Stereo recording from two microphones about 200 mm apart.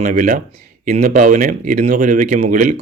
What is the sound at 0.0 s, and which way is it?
Speech, 40° right (ahead or behind).